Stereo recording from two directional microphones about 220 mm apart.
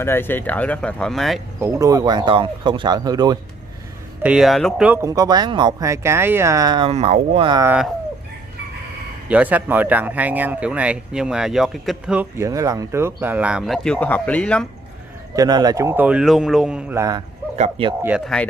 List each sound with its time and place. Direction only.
0.0 s speech: 10° left (ahead or behind)
1.6 s speech: 15° right (ahead or behind)
4.2 s speech: 5° right (ahead or behind); by 7.7 s 20° right (ahead or behind)
9.3 s speech: 5° right (ahead or behind)
15.3 s speech: 15° right (ahead or behind)
17.6 s speech: 25° right (ahead or behind)
18.0 s speech: centre (ahead or behind)